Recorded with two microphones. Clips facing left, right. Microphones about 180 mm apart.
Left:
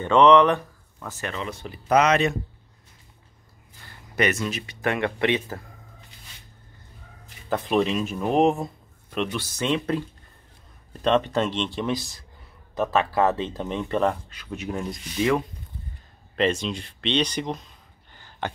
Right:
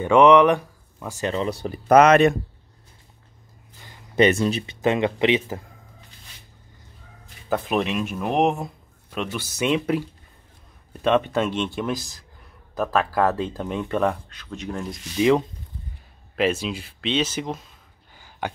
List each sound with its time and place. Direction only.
0.0 s speech: 10° right (ahead or behind)
1.3 s speech: 35° right (ahead or behind); by 2.3 s 55° right (ahead or behind)
3.8 s a sound: 25° right (ahead or behind)
4.8 s speech: 20° right (ahead or behind)
7.7 s speech: 5° right (ahead or behind)
14.3 s speech: 10° left (ahead or behind)
15.1 s speech: 20° right (ahead or behind)
16.3 s speech: 5° right (ahead or behind)
18.1 s a sound: 10° right (ahead or behind)